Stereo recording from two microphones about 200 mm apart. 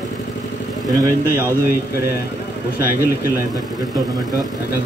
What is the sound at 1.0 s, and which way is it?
Speech, 10° right (ahead or behind).